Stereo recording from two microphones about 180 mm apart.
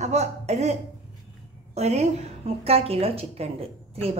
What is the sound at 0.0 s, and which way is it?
Speech, 40° right (ahead or behind).